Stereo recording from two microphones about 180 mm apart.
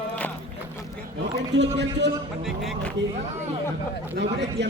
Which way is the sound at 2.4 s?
Centre (ahead or behind).